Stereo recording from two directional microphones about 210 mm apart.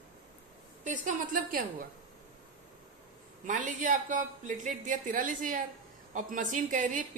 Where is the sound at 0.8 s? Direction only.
40° right (ahead or behind).